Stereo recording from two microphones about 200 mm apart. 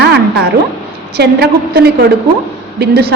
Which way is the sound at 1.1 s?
55° right (ahead or behind).